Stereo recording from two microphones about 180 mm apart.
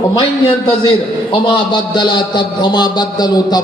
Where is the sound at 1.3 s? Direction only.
25° left (ahead or behind).